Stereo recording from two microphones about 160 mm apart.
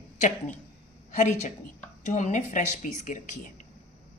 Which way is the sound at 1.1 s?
50° left (ahead or behind).